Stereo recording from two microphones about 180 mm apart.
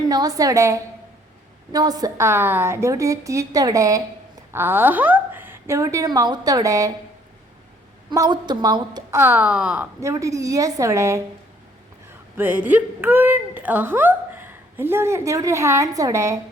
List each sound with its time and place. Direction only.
0.1 s a woman's voice: 20° right (ahead or behind)
8.1 s speech: 20° right (ahead or behind)
12.4 s speech: 10° right (ahead or behind)